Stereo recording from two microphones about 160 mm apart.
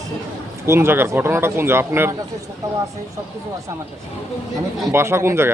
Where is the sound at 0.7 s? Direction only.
15° right (ahead or behind).